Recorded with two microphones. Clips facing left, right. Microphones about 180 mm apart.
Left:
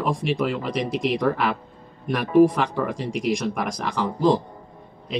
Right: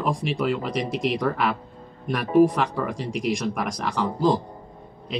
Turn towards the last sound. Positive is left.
turn(degrees=0)  # may be behind; listen again after turning